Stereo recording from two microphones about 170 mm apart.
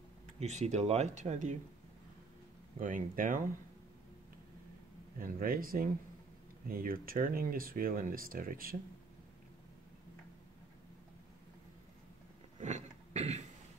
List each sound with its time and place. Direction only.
0.4 s speech: 45° right (ahead or behind)
2.8 s speech: 50° right (ahead or behind)
5.2 s speech: 55° right (ahead or behind)
12.5 s cough: 45° right (ahead or behind)